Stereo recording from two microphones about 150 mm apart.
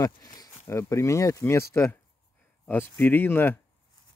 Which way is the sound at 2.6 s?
15° left (ahead or behind).